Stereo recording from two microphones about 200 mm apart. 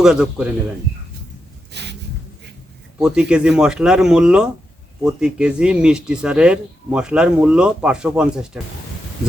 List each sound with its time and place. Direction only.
0.0 s speech: 5° right (ahead or behind)
1.7 s a sound: 60° right (ahead or behind)
3.0 s speech: 5° right (ahead or behind)